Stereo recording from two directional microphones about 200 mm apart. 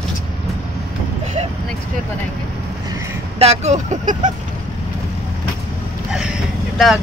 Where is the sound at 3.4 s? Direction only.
35° right (ahead or behind).